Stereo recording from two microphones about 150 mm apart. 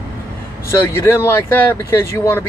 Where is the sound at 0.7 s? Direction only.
15° left (ahead or behind).